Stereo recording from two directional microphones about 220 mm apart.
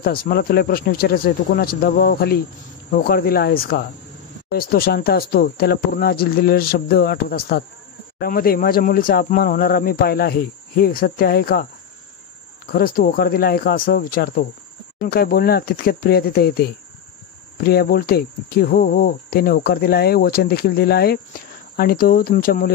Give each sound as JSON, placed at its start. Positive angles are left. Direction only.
{"t": 0.0, "sound": "speech", "side_deg": 40}
{"t": 12.7, "sound": "speech", "side_deg": 40}